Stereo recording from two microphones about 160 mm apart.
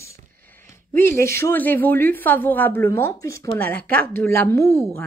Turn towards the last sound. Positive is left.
turn(degrees=15)  # may be behind; listen again after turning